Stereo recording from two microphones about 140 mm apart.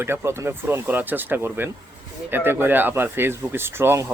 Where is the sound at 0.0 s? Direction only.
20° right (ahead or behind).